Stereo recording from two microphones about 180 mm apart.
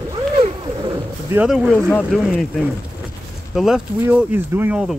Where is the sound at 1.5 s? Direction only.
Centre (ahead or behind).